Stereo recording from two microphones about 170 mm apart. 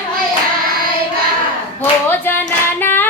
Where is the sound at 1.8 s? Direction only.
10° left (ahead or behind).